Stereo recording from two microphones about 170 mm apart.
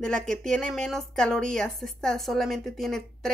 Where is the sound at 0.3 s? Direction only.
5° left (ahead or behind).